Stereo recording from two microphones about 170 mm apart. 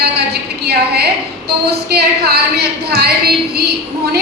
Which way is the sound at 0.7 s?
70° right (ahead or behind).